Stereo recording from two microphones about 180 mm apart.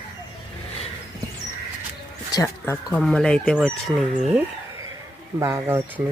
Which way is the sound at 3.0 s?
Centre (ahead or behind).